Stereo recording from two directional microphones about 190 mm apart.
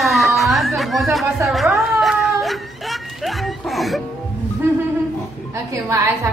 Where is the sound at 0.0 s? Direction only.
Centre (ahead or behind).